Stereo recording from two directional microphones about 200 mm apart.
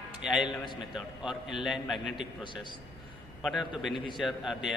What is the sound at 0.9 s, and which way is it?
A man's voice, centre (ahead or behind).